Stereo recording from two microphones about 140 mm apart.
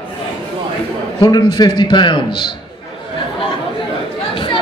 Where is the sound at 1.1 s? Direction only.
30° left (ahead or behind).